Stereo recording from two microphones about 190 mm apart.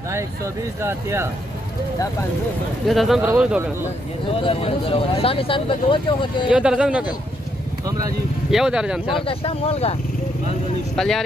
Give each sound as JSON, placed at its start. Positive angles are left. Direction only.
{"t": 0.8, "sound": "speech", "side_deg": -15}
{"t": 2.9, "sound": "speech", "side_deg": 0}
{"t": 4.3, "sound": "speech", "side_deg": 30}
{"t": 6.5, "sound": "speech", "side_deg": -5}
{"t": 8.5, "sound": "speech", "side_deg": -5}
{"t": 9.2, "sound": "speech", "side_deg": 30}
{"t": 11.0, "sound": "speech", "side_deg": 0}